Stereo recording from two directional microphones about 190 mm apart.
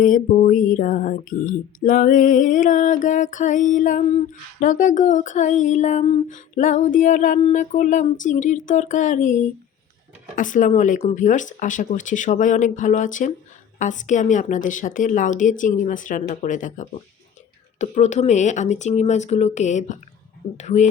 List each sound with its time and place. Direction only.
0.0 s speech: 45° left (ahead or behind)